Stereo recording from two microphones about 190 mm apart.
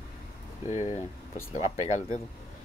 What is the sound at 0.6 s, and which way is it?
Speech, 35° left (ahead or behind).